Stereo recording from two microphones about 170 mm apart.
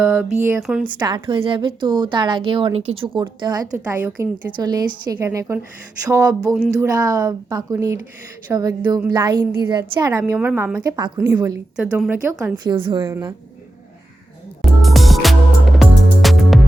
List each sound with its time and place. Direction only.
0.0 s a woman's voice: 5° right (ahead or behind)
0.9 s a woman's voice: 25° right (ahead or behind)
4.0 s a woman's voice: 10° right (ahead or behind)
4.5 s a woman's voice: 25° right (ahead or behind)
10.8 s a woman's voice: 25° right (ahead or behind)
11.8 s a woman's voice: 5° right (ahead or behind); by 13.0 s 30° right (ahead or behind)
13.0 s a woman's voice: 15° right (ahead or behind)
14.6 s music: centre (ahead or behind)